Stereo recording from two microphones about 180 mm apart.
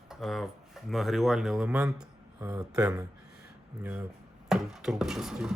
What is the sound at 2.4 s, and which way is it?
Speech, 20° right (ahead or behind).